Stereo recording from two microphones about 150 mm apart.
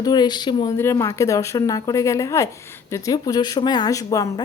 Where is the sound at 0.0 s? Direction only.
25° left (ahead or behind).